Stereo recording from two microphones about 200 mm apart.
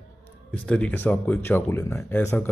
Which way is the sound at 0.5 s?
5° left (ahead or behind).